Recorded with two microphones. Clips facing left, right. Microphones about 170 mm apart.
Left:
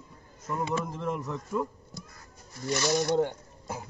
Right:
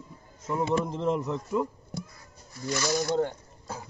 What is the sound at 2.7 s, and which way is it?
Speech, 15° left (ahead or behind).